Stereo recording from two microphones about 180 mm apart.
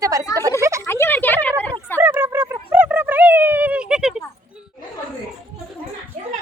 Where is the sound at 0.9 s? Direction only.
15° left (ahead or behind).